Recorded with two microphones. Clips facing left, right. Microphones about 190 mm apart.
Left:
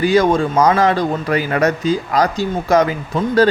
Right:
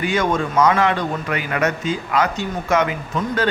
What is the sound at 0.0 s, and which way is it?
Speech, 35° left (ahead or behind).